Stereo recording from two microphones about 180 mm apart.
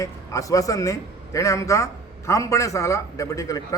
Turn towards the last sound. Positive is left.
turn(degrees=20)  # may be behind; listen again after turning